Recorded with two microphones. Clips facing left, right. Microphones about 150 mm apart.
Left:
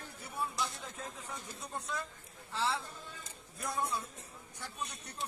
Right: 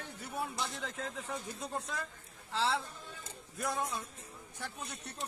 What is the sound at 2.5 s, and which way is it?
Speech, 90° right.